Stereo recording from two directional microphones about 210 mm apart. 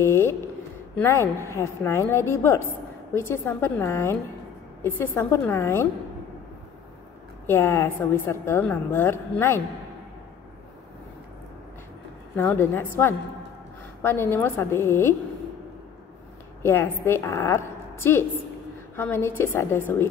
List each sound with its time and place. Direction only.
0.0 s a sound: 10° left (ahead or behind)
0.9 s a woman's voice: 10° left (ahead or behind)
7.4 s a woman's voice: 10° left (ahead or behind)
12.4 s a woman's voice: 10° left (ahead or behind)
14.0 s a woman's voice: 10° left (ahead or behind)
16.6 s a woman's voice: 10° left (ahead or behind)